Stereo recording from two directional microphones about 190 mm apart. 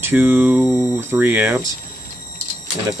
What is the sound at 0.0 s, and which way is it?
Speech, 10° right (ahead or behind).